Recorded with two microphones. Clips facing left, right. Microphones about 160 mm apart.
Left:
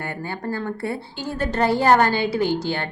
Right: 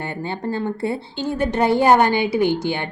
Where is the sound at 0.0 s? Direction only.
25° right (ahead or behind).